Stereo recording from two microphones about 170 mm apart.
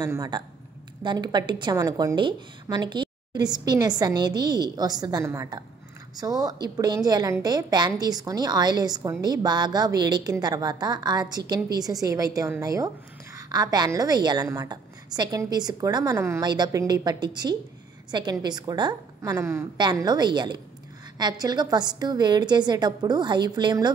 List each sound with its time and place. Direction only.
0.0 s a woman's voice: 20° right (ahead or behind)